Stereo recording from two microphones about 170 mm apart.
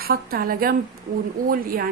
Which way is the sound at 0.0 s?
60° right (ahead or behind).